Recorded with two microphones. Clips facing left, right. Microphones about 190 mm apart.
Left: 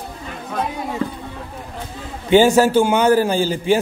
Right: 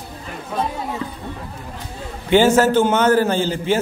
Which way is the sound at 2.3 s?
15° left (ahead or behind).